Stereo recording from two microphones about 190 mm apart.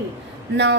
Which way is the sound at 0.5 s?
65° right (ahead or behind).